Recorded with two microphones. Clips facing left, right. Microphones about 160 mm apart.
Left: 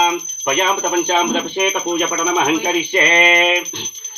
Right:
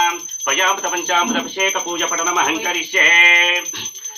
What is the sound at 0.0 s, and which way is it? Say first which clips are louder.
Speech: left 3 dB; 25° left (ahead or behind).